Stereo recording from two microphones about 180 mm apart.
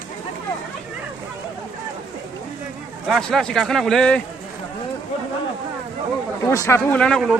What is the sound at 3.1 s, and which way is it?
Speech, centre (ahead or behind).